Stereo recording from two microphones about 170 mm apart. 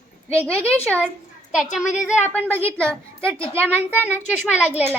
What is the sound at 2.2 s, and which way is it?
Speech, 10° left (ahead or behind).